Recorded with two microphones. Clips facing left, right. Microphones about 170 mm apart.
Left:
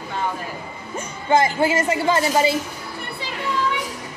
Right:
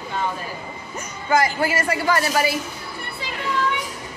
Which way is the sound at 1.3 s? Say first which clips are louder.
Left 2 dB; 25° left (ahead or behind).